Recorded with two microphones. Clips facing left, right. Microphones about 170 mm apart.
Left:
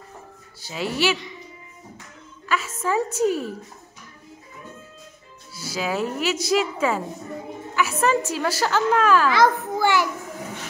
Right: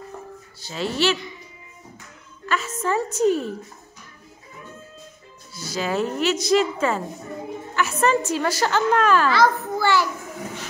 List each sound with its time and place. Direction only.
0.6 s a woman's voice: 10° left (ahead or behind)
2.4 s a woman's voice: 5° left (ahead or behind)
5.5 s a woman's voice: 10° left (ahead or behind)
9.3 s a child's voice: 15° left (ahead or behind)